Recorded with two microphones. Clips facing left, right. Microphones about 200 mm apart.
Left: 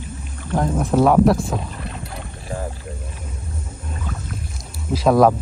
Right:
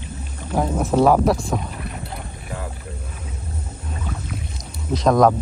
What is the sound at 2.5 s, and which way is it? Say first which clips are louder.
Rowboat: left 4 dB; 30° left (ahead or behind).